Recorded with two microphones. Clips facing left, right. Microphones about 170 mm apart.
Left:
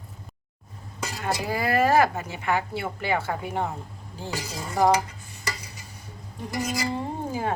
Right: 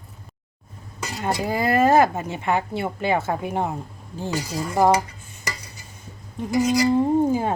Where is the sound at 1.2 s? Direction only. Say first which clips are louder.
Right 4 dB; 25° right (ahead or behind).